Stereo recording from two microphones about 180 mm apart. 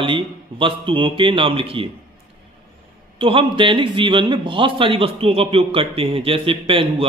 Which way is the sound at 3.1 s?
30° right (ahead or behind).